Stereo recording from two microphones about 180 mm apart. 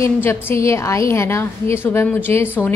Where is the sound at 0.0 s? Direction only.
10° left (ahead or behind).